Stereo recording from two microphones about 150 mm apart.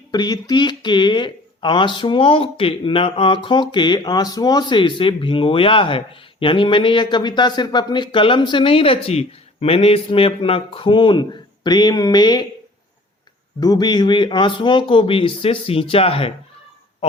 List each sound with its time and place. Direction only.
0.1 s speech: 25° left (ahead or behind)
13.6 s speech: 25° left (ahead or behind)